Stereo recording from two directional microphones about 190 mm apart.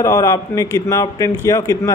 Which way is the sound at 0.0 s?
20° left (ahead or behind).